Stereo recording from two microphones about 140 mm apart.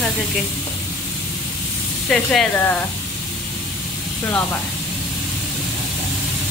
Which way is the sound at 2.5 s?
15° left (ahead or behind).